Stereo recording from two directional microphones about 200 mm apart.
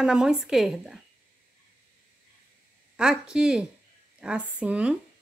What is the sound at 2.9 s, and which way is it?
Speech, 5° right (ahead or behind).